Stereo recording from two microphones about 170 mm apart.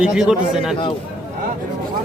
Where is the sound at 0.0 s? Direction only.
5° right (ahead or behind).